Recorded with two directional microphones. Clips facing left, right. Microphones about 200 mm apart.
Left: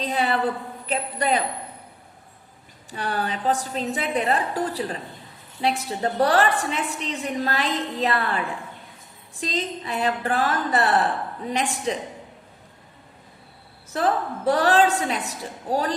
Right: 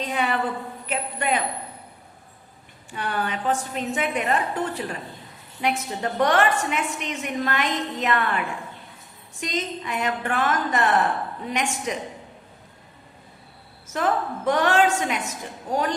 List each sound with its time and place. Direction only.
0.0 s a woman's voice: 35° left (ahead or behind)
2.9 s a woman's voice: 35° left (ahead or behind)
13.8 s a woman's voice: 35° left (ahead or behind)